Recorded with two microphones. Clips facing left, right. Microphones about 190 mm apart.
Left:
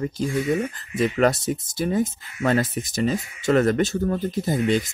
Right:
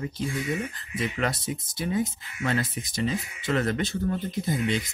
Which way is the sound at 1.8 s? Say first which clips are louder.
Left 4 dB; 50° left (ahead or behind).